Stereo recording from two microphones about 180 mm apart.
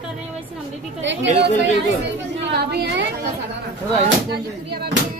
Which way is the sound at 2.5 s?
65° right (ahead or behind).